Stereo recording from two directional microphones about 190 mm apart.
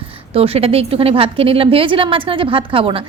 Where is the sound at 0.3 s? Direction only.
30° right (ahead or behind).